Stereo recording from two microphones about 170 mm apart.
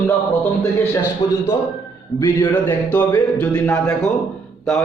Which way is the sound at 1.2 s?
35° left (ahead or behind).